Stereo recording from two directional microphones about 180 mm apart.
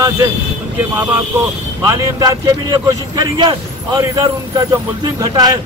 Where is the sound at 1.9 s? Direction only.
20° right (ahead or behind).